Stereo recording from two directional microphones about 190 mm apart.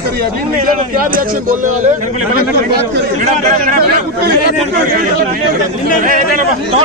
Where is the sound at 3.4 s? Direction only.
50° right (ahead or behind).